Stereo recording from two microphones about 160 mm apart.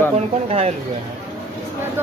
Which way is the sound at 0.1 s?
40° right (ahead or behind).